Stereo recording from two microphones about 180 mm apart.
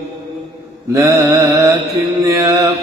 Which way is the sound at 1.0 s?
15° right (ahead or behind).